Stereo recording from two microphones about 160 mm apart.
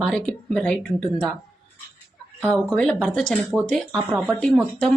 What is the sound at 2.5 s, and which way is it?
Speech, 5° left (ahead or behind).